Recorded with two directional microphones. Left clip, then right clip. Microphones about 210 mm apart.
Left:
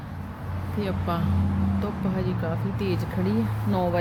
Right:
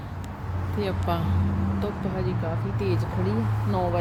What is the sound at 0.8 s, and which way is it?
Speech, centre (ahead or behind).